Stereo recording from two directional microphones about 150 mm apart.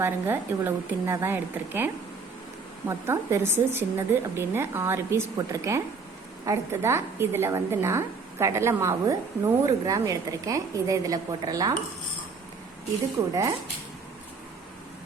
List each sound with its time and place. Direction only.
0.0 s a woman's voice: 15° right (ahead or behind)
13.2 s a woman's voice: 20° right (ahead or behind)